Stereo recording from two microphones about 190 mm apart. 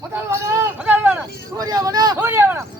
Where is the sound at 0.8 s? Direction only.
10° right (ahead or behind).